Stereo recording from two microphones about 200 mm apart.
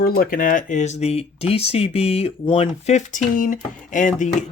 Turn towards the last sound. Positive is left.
turn(degrees=40)  # may be behind; listen again after turning